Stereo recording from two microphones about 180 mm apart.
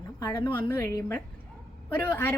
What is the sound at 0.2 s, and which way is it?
Speech, 15° left (ahead or behind).